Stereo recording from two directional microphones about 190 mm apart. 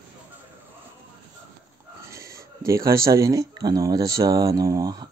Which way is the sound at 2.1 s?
15° right (ahead or behind).